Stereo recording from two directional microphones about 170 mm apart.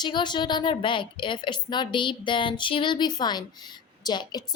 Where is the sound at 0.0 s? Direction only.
25° left (ahead or behind).